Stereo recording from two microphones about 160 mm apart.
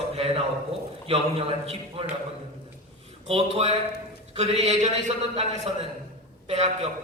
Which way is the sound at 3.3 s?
40° right (ahead or behind).